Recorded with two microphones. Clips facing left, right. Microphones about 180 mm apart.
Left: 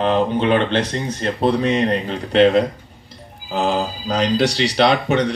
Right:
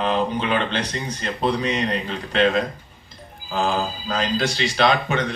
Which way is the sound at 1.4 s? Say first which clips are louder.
Left 5 dB; 55° left (ahead or behind).